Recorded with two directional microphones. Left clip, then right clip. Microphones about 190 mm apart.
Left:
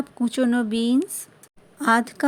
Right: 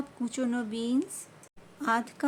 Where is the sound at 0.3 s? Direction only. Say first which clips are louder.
Left 10 dB; 35° left (ahead or behind).